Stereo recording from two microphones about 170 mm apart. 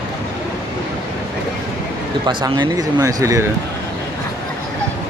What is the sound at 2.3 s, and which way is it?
Speech, 25° right (ahead or behind).